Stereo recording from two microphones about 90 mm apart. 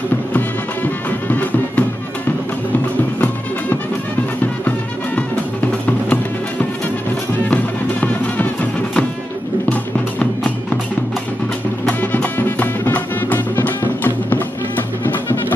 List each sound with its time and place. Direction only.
0.3 s music: 20° left (ahead or behind)
7.4 s music: 15° left (ahead or behind)
9.7 s music: 15° left (ahead or behind)
12.0 s music: 20° left (ahead or behind)